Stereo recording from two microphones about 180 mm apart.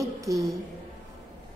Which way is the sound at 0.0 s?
20° right (ahead or behind).